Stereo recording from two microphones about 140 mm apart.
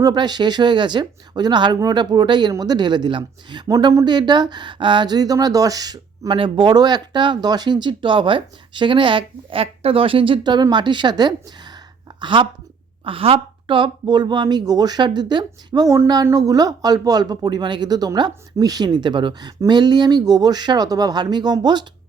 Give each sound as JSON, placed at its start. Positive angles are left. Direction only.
{"t": 0.0, "sound": "a woman's voice", "side_deg": -30}